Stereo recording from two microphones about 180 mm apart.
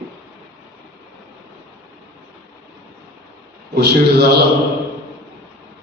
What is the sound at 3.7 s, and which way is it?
Speech, 65° right (ahead or behind).